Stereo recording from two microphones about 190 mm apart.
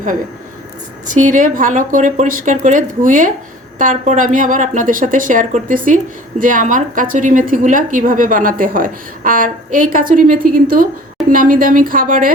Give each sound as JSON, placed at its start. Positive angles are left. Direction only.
{"t": 1.0, "sound": "a woman's voice", "side_deg": -40}